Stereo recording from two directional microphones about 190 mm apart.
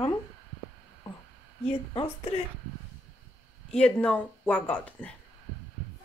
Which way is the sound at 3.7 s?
5° left (ahead or behind).